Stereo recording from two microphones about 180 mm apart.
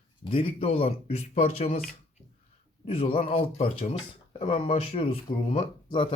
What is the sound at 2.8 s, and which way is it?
Speech, 30° left (ahead or behind).